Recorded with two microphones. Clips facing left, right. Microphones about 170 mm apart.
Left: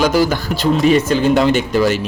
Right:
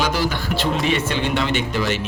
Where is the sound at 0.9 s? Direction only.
40° left (ahead or behind).